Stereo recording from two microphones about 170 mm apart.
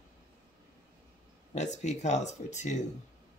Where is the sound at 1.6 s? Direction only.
45° left (ahead or behind).